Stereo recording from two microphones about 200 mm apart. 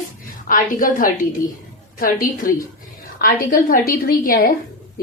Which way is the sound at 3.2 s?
45° left (ahead or behind).